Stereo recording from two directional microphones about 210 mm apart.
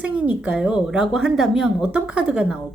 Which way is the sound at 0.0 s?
5° right (ahead or behind).